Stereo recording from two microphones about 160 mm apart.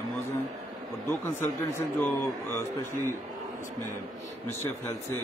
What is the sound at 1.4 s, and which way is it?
A man's voice, 15° left (ahead or behind).